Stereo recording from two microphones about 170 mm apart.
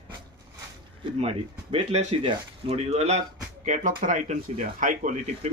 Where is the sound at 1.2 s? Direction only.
35° right (ahead or behind).